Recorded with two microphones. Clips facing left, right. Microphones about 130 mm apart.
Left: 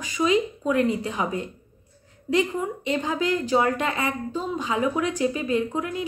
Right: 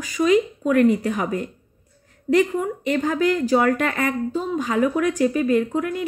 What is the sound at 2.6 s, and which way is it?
Speech, 45° right (ahead or behind).